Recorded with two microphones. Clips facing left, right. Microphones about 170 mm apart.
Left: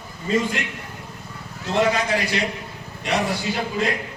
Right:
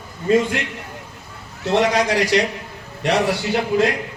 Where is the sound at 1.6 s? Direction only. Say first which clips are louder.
Right 3 dB; 80° right.